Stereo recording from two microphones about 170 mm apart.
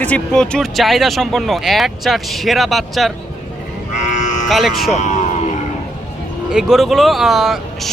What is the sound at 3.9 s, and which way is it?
Cattle, 45° left (ahead or behind).